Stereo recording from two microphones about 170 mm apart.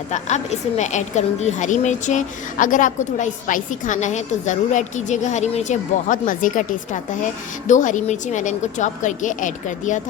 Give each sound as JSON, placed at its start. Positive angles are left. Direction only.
{"t": 0.1, "sound": "a woman's voice", "side_deg": 40}